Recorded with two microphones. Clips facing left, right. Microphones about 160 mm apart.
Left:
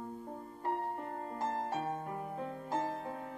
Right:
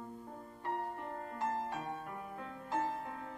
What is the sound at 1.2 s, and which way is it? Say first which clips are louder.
Music: even; 35° left (ahead or behind).